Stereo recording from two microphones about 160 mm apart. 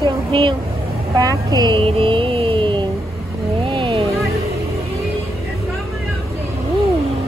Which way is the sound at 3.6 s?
30° right (ahead or behind).